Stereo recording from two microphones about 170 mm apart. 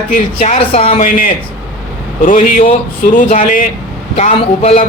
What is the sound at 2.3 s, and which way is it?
Speech, 50° left (ahead or behind).